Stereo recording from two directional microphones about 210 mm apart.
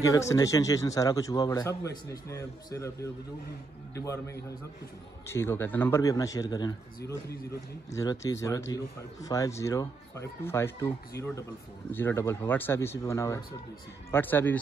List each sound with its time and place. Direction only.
0.0 s a man's voice: 15° left (ahead or behind)
7.9 s a man's voice: 15° left (ahead or behind)